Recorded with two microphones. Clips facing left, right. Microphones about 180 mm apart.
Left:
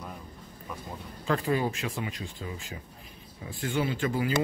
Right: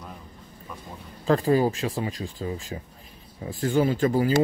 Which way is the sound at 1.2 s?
35° right (ahead or behind).